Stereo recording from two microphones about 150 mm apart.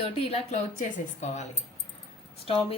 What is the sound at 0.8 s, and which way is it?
Speech, 55° left (ahead or behind).